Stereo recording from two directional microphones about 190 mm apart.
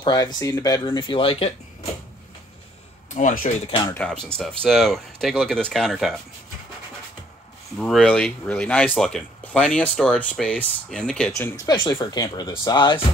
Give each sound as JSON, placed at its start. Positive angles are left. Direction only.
{"t": 0.0, "sound": "speech", "side_deg": 20}
{"t": 3.2, "sound": "speech", "side_deg": 40}
{"t": 3.9, "sound": "speech", "side_deg": 5}
{"t": 7.8, "sound": "speech", "side_deg": 5}